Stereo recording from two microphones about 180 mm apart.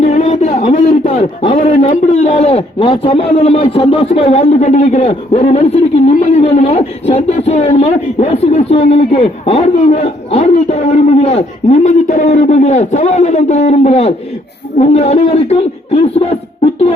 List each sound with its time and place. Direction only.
0.0 s a man's voice: 40° left (ahead or behind)